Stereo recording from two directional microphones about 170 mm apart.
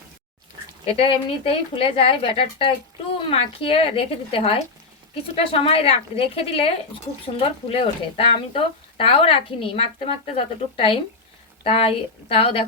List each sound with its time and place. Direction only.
0.9 s speech: 35° left (ahead or behind)